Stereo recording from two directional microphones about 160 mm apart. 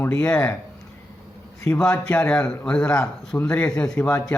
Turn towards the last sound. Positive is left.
turn(degrees=5)  # may be behind; listen again after turning